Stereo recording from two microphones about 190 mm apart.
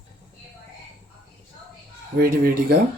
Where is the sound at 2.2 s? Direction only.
50° right (ahead or behind).